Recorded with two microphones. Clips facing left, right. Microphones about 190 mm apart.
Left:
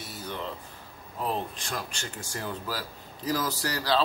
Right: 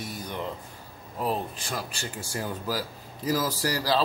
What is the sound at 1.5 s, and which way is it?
Speech, 5° right (ahead or behind).